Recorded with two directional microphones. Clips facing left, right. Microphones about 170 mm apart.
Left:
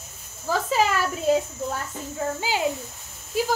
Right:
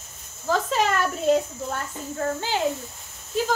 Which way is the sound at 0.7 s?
5° left (ahead or behind).